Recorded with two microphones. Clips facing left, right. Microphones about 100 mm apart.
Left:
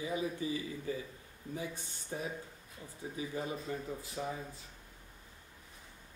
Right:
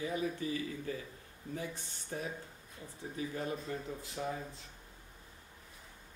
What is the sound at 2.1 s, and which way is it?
Speech, 10° left (ahead or behind).